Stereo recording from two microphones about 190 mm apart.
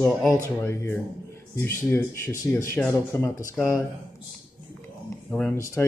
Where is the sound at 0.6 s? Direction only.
15° left (ahead or behind).